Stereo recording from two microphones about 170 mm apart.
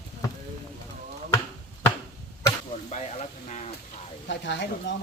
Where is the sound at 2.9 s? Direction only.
40° left (ahead or behind).